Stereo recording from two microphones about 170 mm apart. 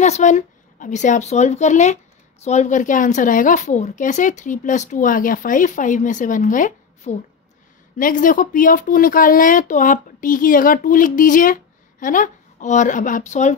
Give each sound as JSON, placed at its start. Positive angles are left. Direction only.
{"t": 0.0, "sound": "speech", "side_deg": 45}